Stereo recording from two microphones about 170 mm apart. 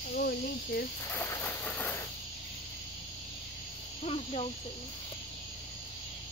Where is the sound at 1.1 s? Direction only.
15° left (ahead or behind).